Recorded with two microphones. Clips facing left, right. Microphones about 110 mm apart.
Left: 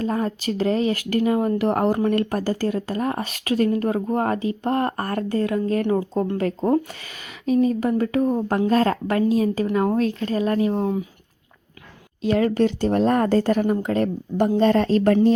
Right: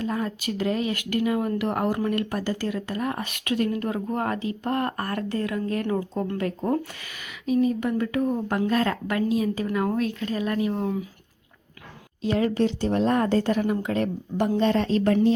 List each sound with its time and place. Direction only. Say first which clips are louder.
0.0 s speech: left 4 dB; 40° left (ahead or behind)
7.4 s speech: left 3 dB; 40° left (ahead or behind)
12.5 s speech: left 4 dB; 50° left (ahead or behind)